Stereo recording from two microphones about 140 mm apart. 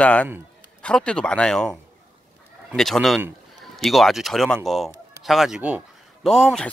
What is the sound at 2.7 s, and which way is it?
Speech, centre (ahead or behind).